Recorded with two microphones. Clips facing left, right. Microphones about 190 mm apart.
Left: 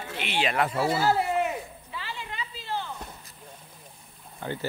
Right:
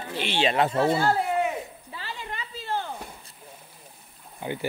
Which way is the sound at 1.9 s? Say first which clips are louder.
Even; 45° right (ahead or behind).